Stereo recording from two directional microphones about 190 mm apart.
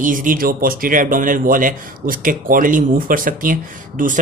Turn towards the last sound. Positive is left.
turn(degrees=-45)  # may be behind; listen again after turning